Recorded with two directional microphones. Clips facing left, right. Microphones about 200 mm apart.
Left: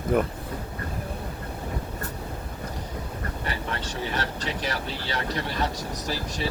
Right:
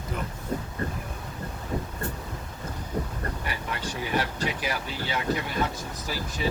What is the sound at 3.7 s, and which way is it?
Speech, 10° right (ahead or behind).